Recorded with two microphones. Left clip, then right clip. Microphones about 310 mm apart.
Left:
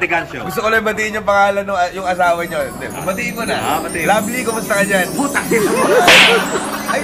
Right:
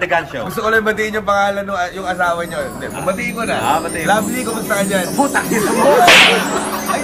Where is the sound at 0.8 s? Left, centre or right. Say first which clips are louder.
Right 1 dB; centre.